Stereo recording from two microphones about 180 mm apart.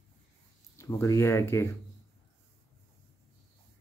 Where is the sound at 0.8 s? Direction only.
15° left (ahead or behind).